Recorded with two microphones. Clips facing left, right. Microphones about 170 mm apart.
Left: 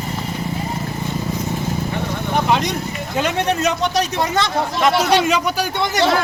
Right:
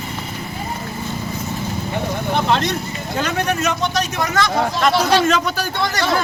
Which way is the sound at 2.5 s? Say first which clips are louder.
Even; 10° left (ahead or behind).